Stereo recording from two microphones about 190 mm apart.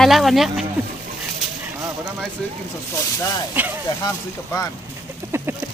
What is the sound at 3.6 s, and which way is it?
Speech, 10° right (ahead or behind).